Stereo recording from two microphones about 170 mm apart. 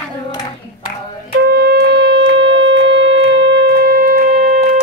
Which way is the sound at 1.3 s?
70° right (ahead or behind).